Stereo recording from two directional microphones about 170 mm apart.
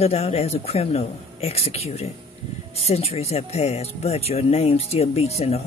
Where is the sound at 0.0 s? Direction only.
40° left (ahead or behind).